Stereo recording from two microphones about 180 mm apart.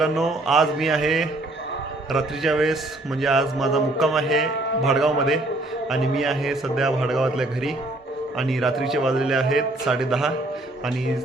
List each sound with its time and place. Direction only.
0.0 s a man's voice: centre (ahead or behind)